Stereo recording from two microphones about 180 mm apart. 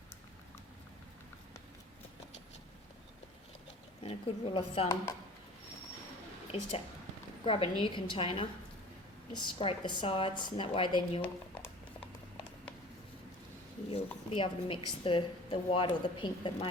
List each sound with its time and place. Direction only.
4.0 s a woman's voice: 30° left (ahead or behind)
6.5 s a woman's voice: 35° left (ahead or behind)
13.9 s a sound: 30° left (ahead or behind)
15.0 s a woman's voice: 30° left (ahead or behind)